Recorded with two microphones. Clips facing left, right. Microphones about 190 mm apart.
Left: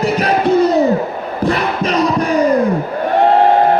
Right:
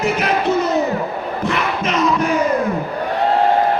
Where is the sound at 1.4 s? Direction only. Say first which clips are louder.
Left 5 dB; 35° left (ahead or behind).